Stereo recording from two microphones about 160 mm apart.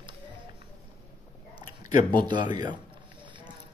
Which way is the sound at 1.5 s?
30° right (ahead or behind).